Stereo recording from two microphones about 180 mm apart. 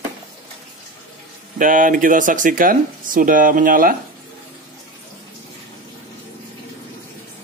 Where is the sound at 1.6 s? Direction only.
50° right (ahead or behind).